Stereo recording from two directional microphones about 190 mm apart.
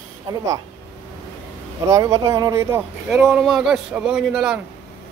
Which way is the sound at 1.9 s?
15° right (ahead or behind).